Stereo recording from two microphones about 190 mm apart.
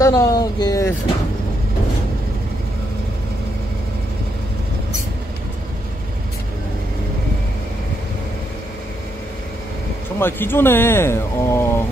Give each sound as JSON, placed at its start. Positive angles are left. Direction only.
{"t": 0.0, "sound": "speech", "side_deg": 20}
{"t": 10.1, "sound": "speech", "side_deg": 10}